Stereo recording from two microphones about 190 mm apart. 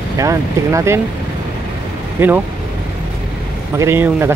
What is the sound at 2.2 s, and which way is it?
Speech, 10° right (ahead or behind).